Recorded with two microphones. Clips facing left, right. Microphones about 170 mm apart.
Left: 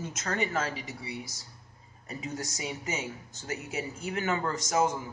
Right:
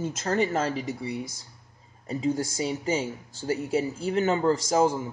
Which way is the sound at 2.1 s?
30° right (ahead or behind).